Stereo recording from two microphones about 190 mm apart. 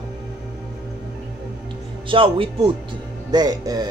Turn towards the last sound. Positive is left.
turn(degrees=-20)  # may be behind; listen again after turning